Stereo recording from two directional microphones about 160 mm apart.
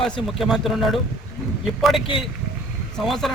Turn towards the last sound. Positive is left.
turn(degrees=0)  # may be behind; listen again after turning